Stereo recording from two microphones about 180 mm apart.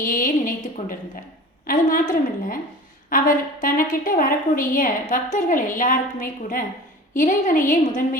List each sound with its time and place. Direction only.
0.0 s a woman's voice: 50° left (ahead or behind)